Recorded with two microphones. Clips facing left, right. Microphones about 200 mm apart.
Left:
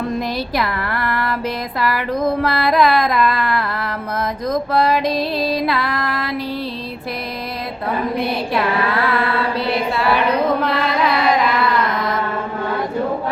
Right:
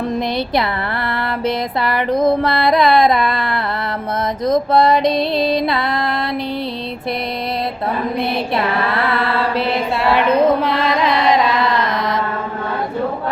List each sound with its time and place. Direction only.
2.2 s music: 25° right (ahead or behind)
4.4 s music: 25° right (ahead or behind)
9.6 s a sound: 25° right (ahead or behind)